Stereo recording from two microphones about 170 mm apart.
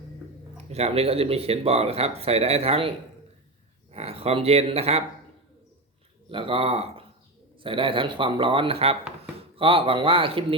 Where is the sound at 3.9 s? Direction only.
35° right (ahead or behind).